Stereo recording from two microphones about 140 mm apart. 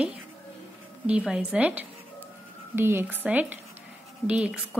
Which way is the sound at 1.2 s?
5° right (ahead or behind).